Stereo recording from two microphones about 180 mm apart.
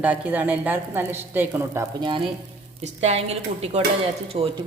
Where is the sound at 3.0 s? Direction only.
35° right (ahead or behind).